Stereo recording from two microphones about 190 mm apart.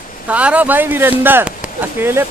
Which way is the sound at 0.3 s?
5° right (ahead or behind).